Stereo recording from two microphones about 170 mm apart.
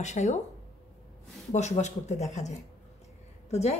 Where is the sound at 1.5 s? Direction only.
40° left (ahead or behind).